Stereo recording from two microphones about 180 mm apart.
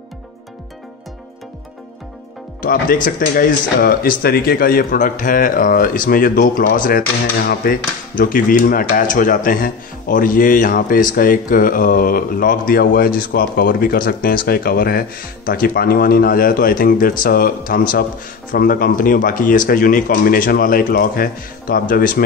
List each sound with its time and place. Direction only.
2.6 s speech: 50° left (ahead or behind)